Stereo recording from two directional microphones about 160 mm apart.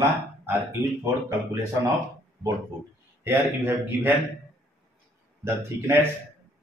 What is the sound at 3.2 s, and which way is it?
Speech, 10° right (ahead or behind).